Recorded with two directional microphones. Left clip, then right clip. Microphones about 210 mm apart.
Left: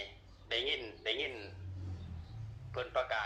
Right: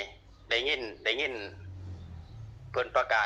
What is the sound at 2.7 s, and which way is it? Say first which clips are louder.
Speech: right 8 dB; 50° right (ahead or behind).